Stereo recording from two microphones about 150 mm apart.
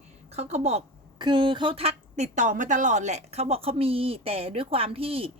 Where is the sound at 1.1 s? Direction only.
30° right (ahead or behind).